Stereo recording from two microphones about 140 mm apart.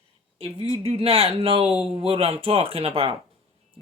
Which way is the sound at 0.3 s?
45° right (ahead or behind).